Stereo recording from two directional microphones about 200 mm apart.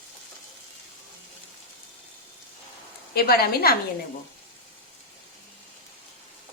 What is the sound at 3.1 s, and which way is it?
Speech, 50° left (ahead or behind).